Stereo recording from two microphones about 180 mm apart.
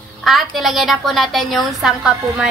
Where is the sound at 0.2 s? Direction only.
Centre (ahead or behind).